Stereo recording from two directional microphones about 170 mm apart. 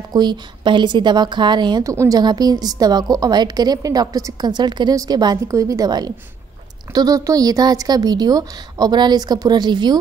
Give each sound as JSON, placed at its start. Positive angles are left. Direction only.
{"t": 0.1, "sound": "a woman's voice", "side_deg": -25}